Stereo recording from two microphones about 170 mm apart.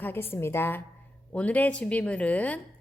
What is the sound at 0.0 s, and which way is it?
A woman's voice, 10° left (ahead or behind).